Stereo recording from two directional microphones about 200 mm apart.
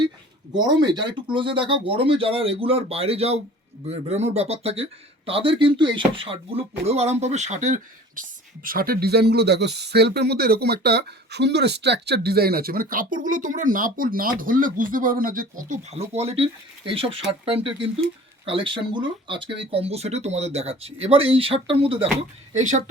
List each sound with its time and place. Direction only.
0.5 s speech: 20° right (ahead or behind); by 22.8 s 35° right (ahead or behind)